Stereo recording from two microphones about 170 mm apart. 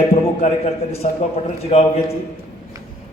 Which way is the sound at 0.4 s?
40° left (ahead or behind).